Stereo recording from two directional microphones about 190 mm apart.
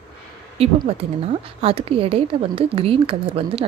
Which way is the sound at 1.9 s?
30° right (ahead or behind).